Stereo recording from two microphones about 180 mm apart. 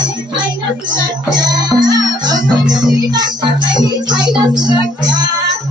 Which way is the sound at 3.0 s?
25° right (ahead or behind).